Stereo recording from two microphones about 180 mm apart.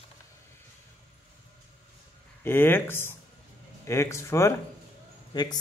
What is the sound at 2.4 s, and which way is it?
Speech, 10° left (ahead or behind).